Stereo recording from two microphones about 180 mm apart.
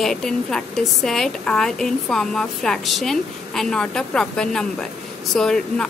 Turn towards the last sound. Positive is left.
turn(degrees=5)  # may be behind; listen again after turning